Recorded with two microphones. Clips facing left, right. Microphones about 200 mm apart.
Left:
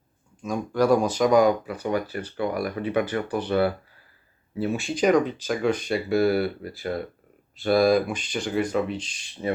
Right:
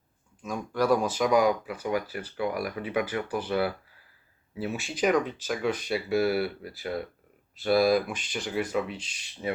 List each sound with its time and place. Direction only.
0.5 s speech: 35° left (ahead or behind)
1.3 s speech: 5° right (ahead or behind)